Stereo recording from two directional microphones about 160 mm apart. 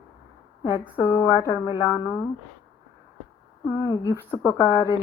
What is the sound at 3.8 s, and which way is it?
Speech, 20° left (ahead or behind).